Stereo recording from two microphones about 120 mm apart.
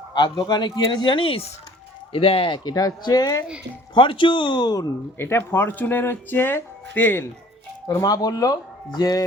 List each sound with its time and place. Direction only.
0.1 s speech: 35° left (ahead or behind)
3.9 s speech: 45° left (ahead or behind)
5.1 s speech: 20° left (ahead or behind)
7.9 s speech: 30° left (ahead or behind)